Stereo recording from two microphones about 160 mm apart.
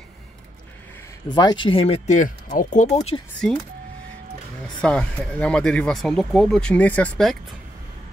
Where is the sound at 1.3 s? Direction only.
25° left (ahead or behind); by 3.2 s 50° left (ahead or behind).